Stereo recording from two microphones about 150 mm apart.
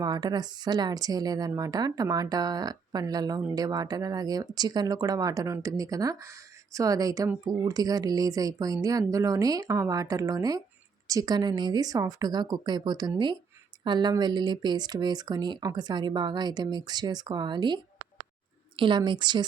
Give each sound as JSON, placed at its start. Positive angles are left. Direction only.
{"t": 0.0, "sound": "speech", "side_deg": -25}
{"t": 18.8, "sound": "speech", "side_deg": -30}